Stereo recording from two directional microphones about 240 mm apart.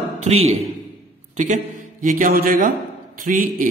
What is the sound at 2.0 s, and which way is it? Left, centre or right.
A man's voice, right.